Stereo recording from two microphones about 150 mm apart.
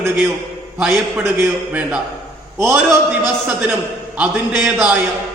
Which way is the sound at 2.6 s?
20° right (ahead or behind).